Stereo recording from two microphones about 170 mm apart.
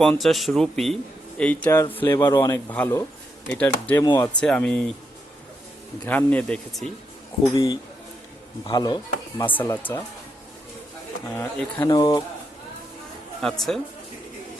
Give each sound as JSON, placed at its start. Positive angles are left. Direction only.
{"t": 0.0, "sound": "a man's voice", "side_deg": 0}
{"t": 6.1, "sound": "a man's voice", "side_deg": 10}
{"t": 7.5, "sound": "speech", "side_deg": 20}
{"t": 9.4, "sound": "a man's voice", "side_deg": 15}
{"t": 11.3, "sound": "speech", "side_deg": 20}
{"t": 13.4, "sound": "speech", "side_deg": 0}